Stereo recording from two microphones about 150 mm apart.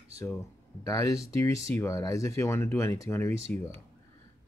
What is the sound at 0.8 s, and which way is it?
Speech, 20° left (ahead or behind).